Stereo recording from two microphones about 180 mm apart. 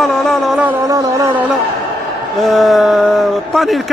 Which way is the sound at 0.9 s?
20° right (ahead or behind).